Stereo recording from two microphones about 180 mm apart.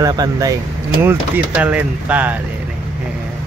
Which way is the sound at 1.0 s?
10° right (ahead or behind).